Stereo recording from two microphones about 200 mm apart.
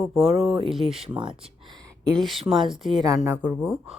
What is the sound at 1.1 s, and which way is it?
Speech, 25° right (ahead or behind).